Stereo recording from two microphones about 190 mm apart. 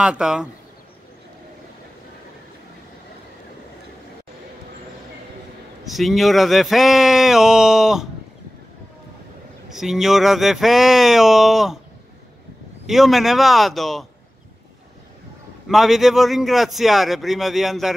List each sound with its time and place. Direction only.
0.0 s a man's voice: 5° right (ahead or behind)
5.9 s a man's voice: centre (ahead or behind)
9.7 s a man's voice: centre (ahead or behind)
12.8 s a man's voice: centre (ahead or behind)
15.7 s a man's voice: centre (ahead or behind)